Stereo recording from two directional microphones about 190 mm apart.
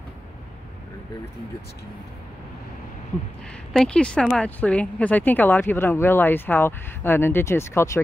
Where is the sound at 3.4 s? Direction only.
5° left (ahead or behind).